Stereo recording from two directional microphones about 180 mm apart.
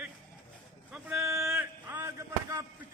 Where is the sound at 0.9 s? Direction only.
5° right (ahead or behind).